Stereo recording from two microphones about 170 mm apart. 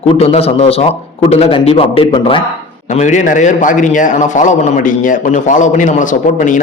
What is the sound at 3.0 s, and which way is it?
A man's voice, 45° left (ahead or behind).